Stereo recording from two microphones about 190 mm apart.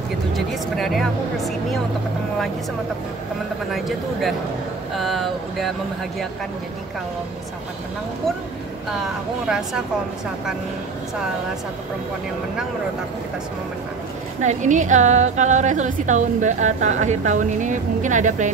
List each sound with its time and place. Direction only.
0.7 s speech: centre (ahead or behind)
3.7 s speech: centre (ahead or behind)
9.5 s speech: 5° right (ahead or behind)
14.4 s a woman's voice: 40° right (ahead or behind)